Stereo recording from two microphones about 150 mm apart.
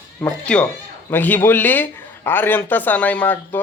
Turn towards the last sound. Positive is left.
turn(degrees=10)  # may be behind; listen again after turning